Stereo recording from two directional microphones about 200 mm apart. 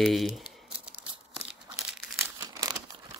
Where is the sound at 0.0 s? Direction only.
Centre (ahead or behind).